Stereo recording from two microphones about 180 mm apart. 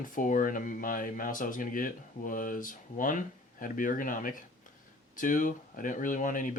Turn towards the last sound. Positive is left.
turn(degrees=45)  # may be behind; listen again after turning